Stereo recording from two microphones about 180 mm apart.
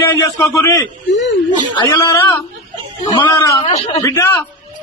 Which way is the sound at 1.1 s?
80° left.